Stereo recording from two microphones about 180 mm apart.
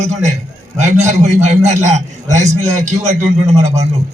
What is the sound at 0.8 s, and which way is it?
A man's voice, 40° right (ahead or behind).